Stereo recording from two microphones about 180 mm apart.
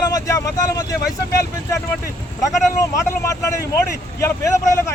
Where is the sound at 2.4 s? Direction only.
20° left (ahead or behind).